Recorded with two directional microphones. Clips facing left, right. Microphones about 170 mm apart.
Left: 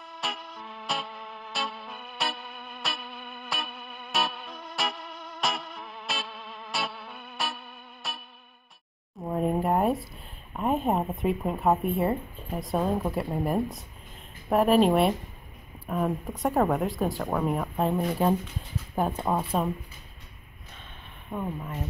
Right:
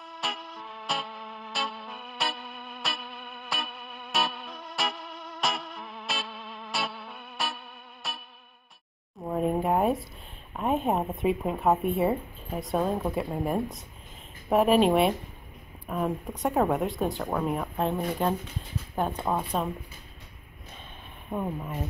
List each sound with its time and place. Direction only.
0.2 s music: centre (ahead or behind)
9.2 s a sound: centre (ahead or behind)
10.5 s speech: centre (ahead or behind)
21.3 s speech: 10° right (ahead or behind)